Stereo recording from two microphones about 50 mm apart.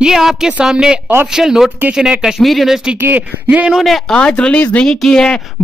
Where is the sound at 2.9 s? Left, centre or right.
Right.